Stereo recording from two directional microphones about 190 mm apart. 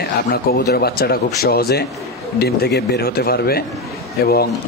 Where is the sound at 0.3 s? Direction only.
55° left (ahead or behind).